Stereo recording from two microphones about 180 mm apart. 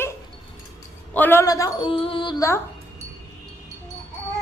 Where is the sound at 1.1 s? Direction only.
10° left (ahead or behind).